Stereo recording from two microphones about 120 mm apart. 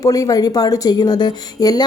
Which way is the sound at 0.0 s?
30° left (ahead or behind).